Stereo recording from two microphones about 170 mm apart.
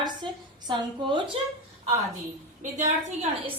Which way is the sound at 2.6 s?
45° right (ahead or behind).